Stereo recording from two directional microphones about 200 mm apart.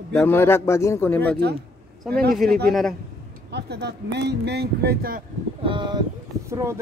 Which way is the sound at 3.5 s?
55° right (ahead or behind).